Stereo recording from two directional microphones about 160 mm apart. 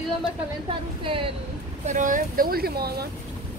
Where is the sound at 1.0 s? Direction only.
35° right (ahead or behind).